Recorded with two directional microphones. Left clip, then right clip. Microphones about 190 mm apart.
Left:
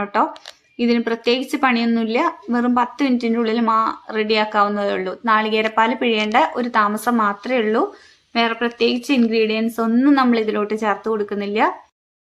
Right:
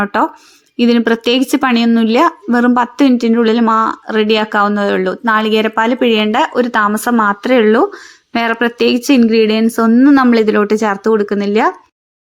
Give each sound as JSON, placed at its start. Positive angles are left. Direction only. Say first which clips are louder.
{"t": 0.0, "sound": "speech", "louder": "right 5 dB", "side_deg": -30}